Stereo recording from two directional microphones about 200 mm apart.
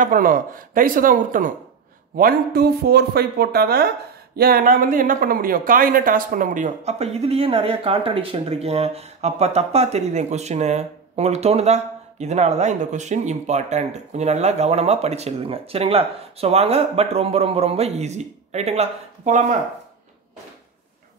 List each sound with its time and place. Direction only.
0.0 s speech: 45° right (ahead or behind)